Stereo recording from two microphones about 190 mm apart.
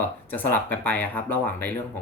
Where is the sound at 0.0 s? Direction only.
10° left (ahead or behind).